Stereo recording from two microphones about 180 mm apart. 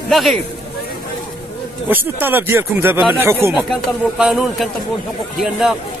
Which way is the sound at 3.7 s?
5° right (ahead or behind).